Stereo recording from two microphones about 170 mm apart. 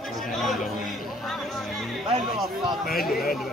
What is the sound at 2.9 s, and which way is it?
Speech, 60° left (ahead or behind).